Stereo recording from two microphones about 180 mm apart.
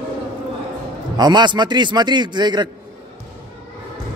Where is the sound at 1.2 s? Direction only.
25° right (ahead or behind).